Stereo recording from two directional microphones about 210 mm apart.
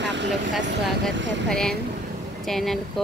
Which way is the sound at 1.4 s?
5° left (ahead or behind).